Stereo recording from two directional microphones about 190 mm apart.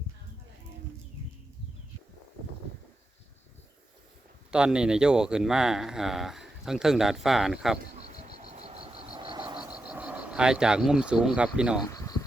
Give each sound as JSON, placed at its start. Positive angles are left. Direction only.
{"t": 4.5, "sound": "speech", "side_deg": -5}
{"t": 8.2, "sound": "frog", "side_deg": -35}
{"t": 9.6, "sound": "speech", "side_deg": -5}
{"t": 11.9, "sound": "a sound", "side_deg": 20}